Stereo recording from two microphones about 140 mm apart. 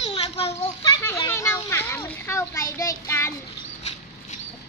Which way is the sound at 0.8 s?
20° left (ahead or behind).